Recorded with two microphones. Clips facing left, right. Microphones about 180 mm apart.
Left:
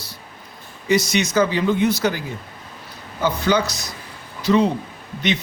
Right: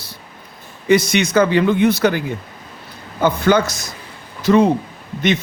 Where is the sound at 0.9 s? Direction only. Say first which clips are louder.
Right 4 dB; 55° right (ahead or behind).